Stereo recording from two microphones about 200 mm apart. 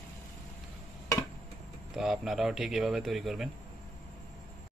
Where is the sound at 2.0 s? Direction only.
Centre (ahead or behind).